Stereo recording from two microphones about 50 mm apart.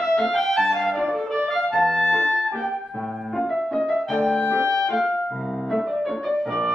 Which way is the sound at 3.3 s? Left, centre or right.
Centre.